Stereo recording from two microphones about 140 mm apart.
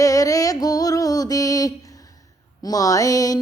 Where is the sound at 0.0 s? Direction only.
25° left (ahead or behind).